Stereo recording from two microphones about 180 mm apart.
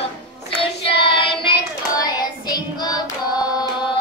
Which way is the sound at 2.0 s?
20° left (ahead or behind).